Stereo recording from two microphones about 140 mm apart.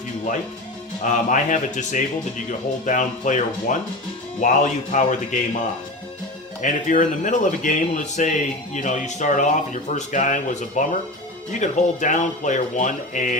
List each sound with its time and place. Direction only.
1.0 s speech: 65° left (ahead or behind)
6.6 s speech: 65° left (ahead or behind)